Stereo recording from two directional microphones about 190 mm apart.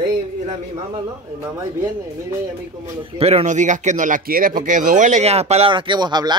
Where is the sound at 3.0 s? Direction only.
30° right (ahead or behind).